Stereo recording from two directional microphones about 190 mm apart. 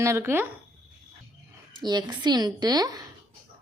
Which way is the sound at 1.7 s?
25° right (ahead or behind).